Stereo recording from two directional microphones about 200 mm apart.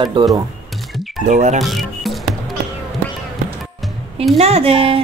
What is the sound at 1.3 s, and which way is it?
Speech, 35° right (ahead or behind).